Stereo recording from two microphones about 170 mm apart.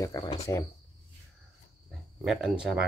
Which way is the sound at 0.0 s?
25° left (ahead or behind).